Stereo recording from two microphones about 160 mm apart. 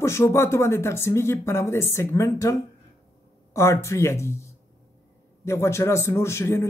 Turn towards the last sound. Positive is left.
turn(degrees=15)  # may be behind; listen again after turning